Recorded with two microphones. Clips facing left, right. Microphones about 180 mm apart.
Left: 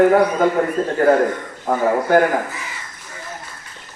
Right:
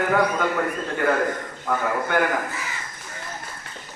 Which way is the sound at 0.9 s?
40° left (ahead or behind).